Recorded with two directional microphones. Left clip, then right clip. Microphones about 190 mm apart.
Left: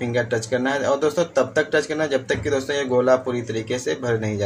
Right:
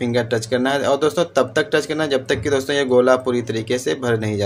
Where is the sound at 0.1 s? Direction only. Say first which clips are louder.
Right 1 dB; 30° right (ahead or behind).